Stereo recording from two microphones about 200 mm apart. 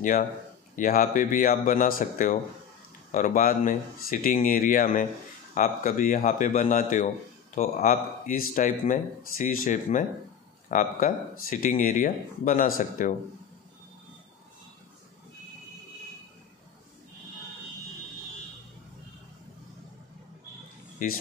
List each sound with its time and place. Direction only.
0.7 s speech: 40° left (ahead or behind)
21.0 s speech: 45° left (ahead or behind)